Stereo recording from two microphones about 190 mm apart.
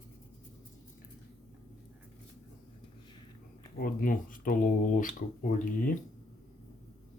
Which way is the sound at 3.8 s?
45° left (ahead or behind).